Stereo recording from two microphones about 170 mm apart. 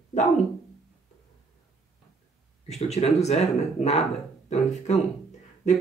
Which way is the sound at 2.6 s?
40° left (ahead or behind).